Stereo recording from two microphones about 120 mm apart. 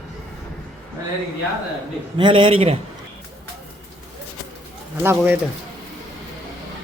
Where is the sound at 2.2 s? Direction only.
50° right (ahead or behind).